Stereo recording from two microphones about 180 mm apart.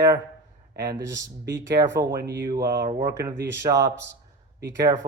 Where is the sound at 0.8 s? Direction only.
20° right (ahead or behind).